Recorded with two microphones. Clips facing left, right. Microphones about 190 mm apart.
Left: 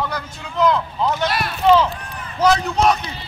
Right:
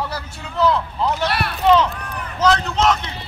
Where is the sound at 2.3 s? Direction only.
10° left (ahead or behind).